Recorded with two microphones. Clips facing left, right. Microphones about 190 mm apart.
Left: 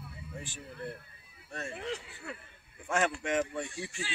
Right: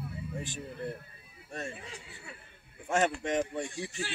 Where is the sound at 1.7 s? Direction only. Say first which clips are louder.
Left 8 dB; 75° left (ahead or behind).